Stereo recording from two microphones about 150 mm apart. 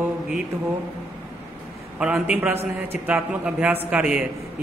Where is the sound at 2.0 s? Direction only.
5° right (ahead or behind).